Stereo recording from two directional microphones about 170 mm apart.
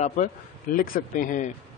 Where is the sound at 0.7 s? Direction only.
55° left (ahead or behind).